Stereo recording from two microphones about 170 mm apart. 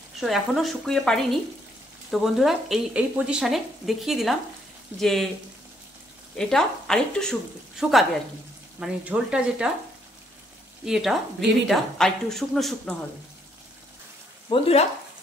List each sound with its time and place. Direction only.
0.2 s speech: centre (ahead or behind)
6.3 s speech: 5° left (ahead or behind)
10.9 s speech: centre (ahead or behind)
14.5 s speech: 35° left (ahead or behind)